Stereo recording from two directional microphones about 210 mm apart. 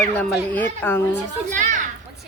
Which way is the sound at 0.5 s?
10° left (ahead or behind).